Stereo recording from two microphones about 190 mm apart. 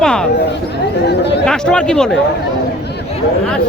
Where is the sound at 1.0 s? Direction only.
65° left (ahead or behind).